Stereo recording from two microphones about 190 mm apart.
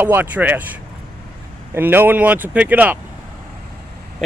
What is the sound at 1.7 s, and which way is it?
Speech, 10° right (ahead or behind).